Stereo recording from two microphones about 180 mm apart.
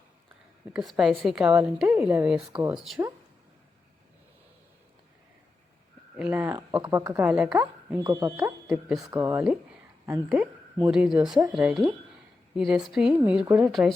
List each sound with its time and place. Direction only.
0.7 s a woman's voice: centre (ahead or behind)
6.1 s speech: 5° right (ahead or behind)
7.9 s speech: 20° right (ahead or behind)
8.6 s speech: centre (ahead or behind)
9.0 s a woman's voice: 15° right (ahead or behind)